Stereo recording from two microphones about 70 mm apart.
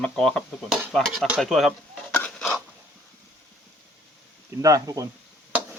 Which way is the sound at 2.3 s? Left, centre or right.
Centre.